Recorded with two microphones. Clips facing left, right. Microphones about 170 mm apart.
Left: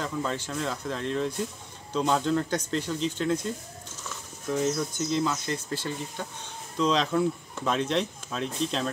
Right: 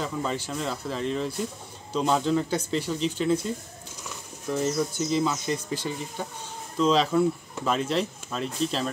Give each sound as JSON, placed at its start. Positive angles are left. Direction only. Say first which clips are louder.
{"t": 0.0, "sound": "speech", "louder": "right 1 dB", "side_deg": -5}